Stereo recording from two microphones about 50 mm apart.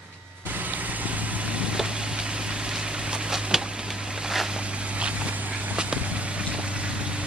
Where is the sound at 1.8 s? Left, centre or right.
Centre.